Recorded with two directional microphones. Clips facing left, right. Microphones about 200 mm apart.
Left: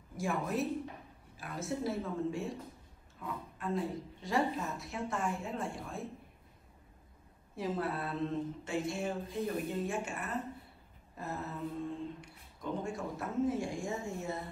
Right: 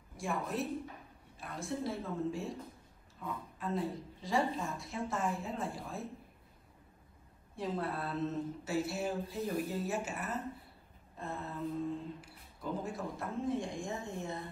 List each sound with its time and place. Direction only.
0.2 s mantra: centre (ahead or behind)
7.5 s mantra: centre (ahead or behind)
11.1 s speech: 5° left (ahead or behind)